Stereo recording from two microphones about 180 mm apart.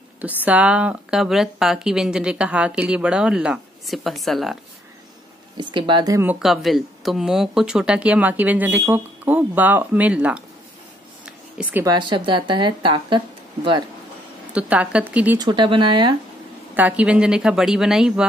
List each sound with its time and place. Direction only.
0.5 s speech: 5° right (ahead or behind)
5.6 s speech: 25° right (ahead or behind)
6.4 s speech: centre (ahead or behind)
11.2 s a sound: 5° right (ahead or behind)
11.8 s speech: 25° right (ahead or behind)
14.5 s speech: 5° right (ahead or behind)
15.3 s speech: 25° right (ahead or behind)
16.7 s speech: 10° right (ahead or behind)